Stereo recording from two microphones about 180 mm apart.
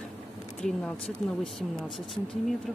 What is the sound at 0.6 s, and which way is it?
Speech, 5° left (ahead or behind).